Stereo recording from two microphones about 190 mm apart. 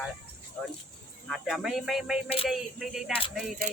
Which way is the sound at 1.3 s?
Centre (ahead or behind).